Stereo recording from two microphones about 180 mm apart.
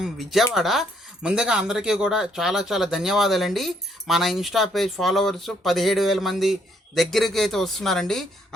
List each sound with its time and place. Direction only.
0.0 s speech: centre (ahead or behind)